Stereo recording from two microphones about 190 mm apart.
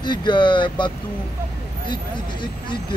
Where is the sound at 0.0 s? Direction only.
25° left (ahead or behind).